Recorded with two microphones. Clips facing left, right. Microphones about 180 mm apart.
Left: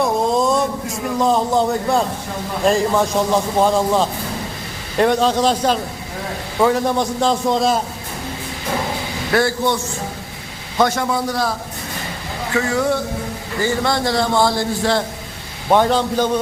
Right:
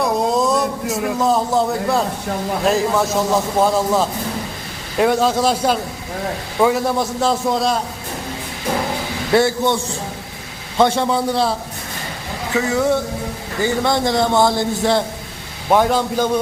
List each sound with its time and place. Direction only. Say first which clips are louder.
0.0 s a sound: even; centre (ahead or behind)
2.7 s a man's voice: left 2 dB; 5° right (ahead or behind)
9.3 s a man's voice: right 2 dB; 25° right (ahead or behind)
10.8 s a man's voice: right 2 dB; 25° right (ahead or behind)
12.5 s a man's voice: right 1 dB; 20° right (ahead or behind)
15.7 s a man's voice: even; 10° right (ahead or behind)